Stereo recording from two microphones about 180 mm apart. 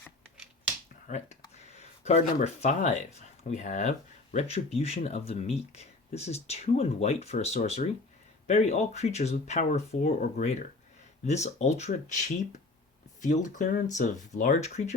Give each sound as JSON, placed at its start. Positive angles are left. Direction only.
{"t": 1.0, "sound": "speech", "side_deg": 40}
{"t": 1.5, "sound": "a sound", "side_deg": 35}
{"t": 2.4, "sound": "speech", "side_deg": 40}